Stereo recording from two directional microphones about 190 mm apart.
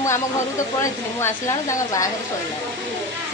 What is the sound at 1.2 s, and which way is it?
Speech, 15° left (ahead or behind).